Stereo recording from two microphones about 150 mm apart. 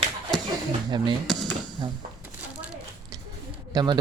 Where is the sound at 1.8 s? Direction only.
35° right (ahead or behind).